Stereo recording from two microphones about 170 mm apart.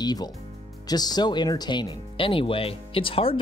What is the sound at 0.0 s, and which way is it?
Speech, 25° left (ahead or behind).